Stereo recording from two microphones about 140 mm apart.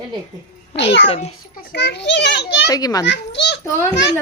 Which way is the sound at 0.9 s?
45° left (ahead or behind).